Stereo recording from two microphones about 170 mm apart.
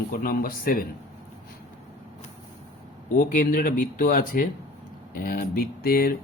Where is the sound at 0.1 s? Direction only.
60° left (ahead or behind).